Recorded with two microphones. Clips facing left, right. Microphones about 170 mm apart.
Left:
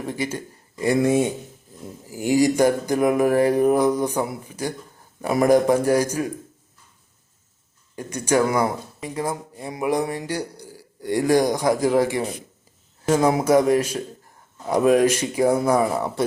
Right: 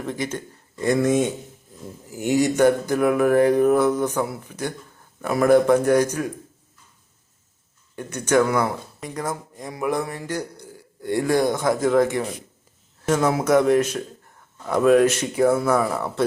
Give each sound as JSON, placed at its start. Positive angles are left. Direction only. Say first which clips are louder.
{"t": 0.0, "sound": "speech", "louder": "even", "side_deg": 10}
{"t": 7.9, "sound": "speech", "louder": "right 1 dB", "side_deg": 10}
{"t": 10.6, "sound": "a sound", "louder": "left 1 dB", "side_deg": 35}
{"t": 11.5, "sound": "speech", "louder": "even", "side_deg": 15}